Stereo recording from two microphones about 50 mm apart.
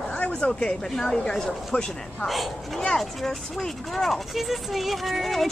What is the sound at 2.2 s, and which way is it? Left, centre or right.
Speech, centre.